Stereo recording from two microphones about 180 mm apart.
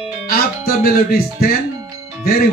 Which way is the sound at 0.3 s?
55° left (ahead or behind).